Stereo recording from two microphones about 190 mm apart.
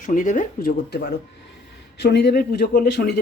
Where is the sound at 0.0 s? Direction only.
45° left (ahead or behind).